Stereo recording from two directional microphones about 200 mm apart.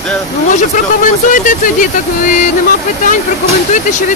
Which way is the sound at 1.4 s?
40° left (ahead or behind).